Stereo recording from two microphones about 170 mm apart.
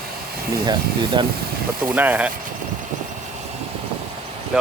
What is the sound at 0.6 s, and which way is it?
Speech, 30° right (ahead or behind).